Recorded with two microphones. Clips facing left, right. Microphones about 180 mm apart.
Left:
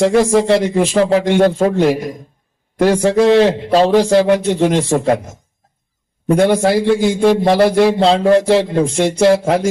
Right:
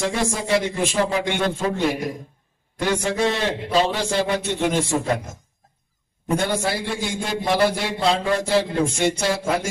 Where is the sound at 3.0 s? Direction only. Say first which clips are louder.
Left 15 dB; 70° left (ahead or behind).